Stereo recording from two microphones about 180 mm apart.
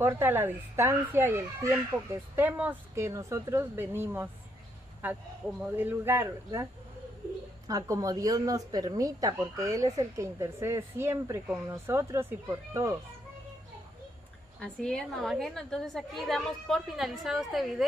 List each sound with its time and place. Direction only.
0.0 s a woman's voice: 15° right (ahead or behind)
14.6 s a woman's voice: 5° left (ahead or behind)